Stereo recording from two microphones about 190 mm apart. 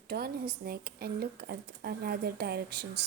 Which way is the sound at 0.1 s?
55° right (ahead or behind).